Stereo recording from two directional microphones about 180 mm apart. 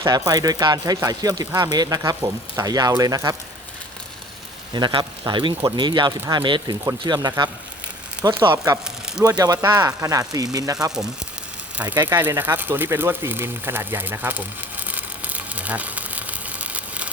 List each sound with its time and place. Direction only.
0.0 s speech: 20° right (ahead or behind)
4.7 s speech: 25° right (ahead or behind)
12.0 s a sound: 10° right (ahead or behind)